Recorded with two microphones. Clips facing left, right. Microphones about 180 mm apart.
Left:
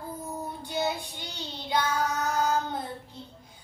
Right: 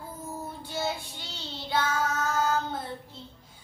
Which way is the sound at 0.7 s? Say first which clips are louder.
Left 2 dB; 15° left (ahead or behind).